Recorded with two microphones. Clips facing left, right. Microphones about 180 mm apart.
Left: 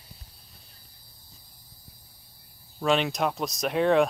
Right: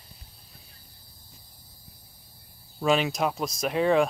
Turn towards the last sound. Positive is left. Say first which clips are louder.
# left 1 dB
turn(degrees=0)  # may be behind; listen again after turning